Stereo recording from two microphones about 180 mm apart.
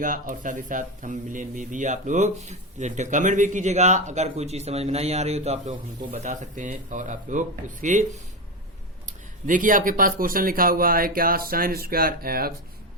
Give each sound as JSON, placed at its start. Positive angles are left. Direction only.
{"t": 0.0, "sound": "speech", "side_deg": -50}